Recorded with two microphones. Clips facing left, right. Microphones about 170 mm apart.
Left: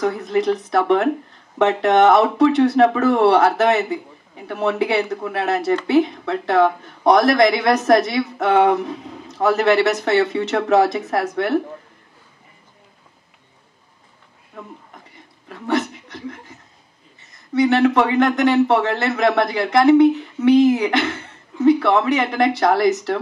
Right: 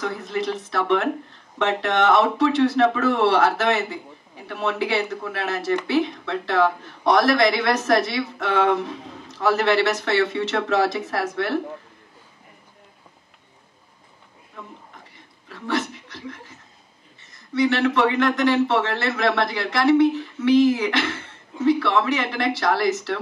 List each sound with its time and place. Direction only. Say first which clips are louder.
0.2 s speech: left 7 dB; 20° left (ahead or behind)
15.6 s chuckle: left 4 dB; 20° left (ahead or behind)
18.0 s speech: left 3 dB; 20° left (ahead or behind)